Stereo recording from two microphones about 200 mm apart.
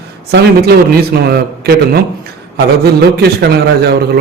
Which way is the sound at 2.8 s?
50° right (ahead or behind).